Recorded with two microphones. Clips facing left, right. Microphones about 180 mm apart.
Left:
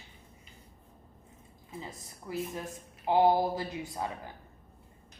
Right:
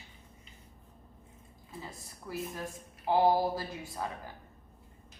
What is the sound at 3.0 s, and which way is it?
Speech, 20° left (ahead or behind).